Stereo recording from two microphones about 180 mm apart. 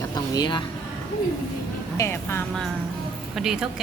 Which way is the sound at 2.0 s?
15° left (ahead or behind).